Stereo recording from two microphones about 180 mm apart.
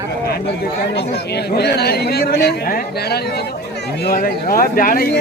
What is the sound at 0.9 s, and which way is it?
Speech, 65° left (ahead or behind).